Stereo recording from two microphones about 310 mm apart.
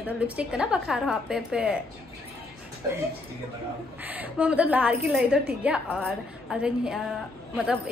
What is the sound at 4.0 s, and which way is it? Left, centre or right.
A woman's voice, centre.